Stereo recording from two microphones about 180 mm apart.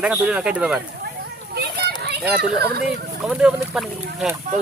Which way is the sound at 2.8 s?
5° right (ahead or behind).